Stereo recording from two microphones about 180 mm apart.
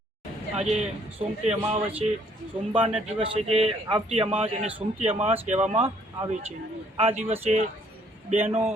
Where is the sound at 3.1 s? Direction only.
35° right (ahead or behind).